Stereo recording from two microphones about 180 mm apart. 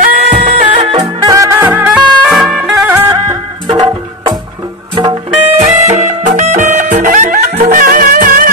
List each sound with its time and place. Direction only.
0.6 s music: 30° right (ahead or behind)
1.0 s music: 20° right (ahead or behind)
4.9 s music: 25° right (ahead or behind)
5.6 s music: 45° right (ahead or behind)
7.8 s music: 50° right (ahead or behind)